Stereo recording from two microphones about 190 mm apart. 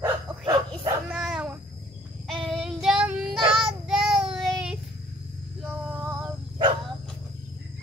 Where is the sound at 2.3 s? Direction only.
Centre (ahead or behind).